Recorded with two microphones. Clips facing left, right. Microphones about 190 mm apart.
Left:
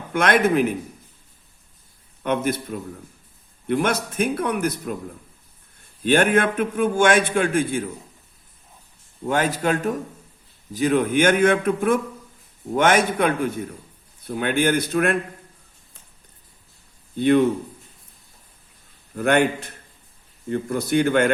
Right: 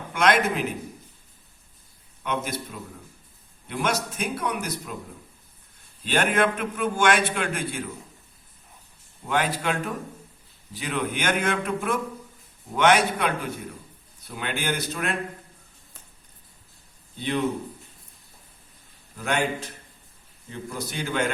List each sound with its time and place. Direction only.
0.1 s a man's voice: 55° left (ahead or behind)
2.2 s a man's voice: 55° left (ahead or behind)
6.1 s a man's voice: 50° left (ahead or behind)
9.2 s a man's voice: 45° left (ahead or behind)
17.2 s a man's voice: 55° left (ahead or behind)
19.1 s a man's voice: 55° left (ahead or behind)